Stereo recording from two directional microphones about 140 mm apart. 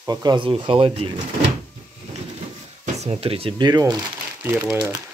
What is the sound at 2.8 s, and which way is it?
Speech, 50° right (ahead or behind).